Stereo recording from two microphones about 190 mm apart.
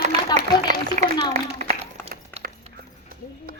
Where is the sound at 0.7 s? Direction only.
40° right (ahead or behind).